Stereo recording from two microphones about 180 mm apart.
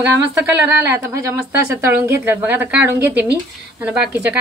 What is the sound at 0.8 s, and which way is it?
Speech, 15° right (ahead or behind).